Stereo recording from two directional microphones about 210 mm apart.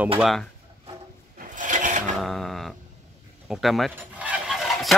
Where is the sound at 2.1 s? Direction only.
Centre (ahead or behind).